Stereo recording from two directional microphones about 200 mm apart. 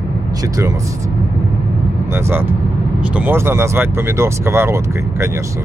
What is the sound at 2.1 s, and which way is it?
Speech, 10° right (ahead or behind).